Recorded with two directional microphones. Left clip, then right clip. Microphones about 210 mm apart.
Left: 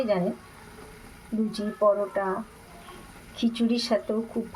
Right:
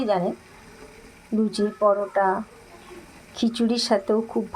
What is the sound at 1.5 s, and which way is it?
Speech, 30° right (ahead or behind).